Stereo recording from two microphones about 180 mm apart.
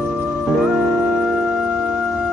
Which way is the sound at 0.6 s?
Centre (ahead or behind).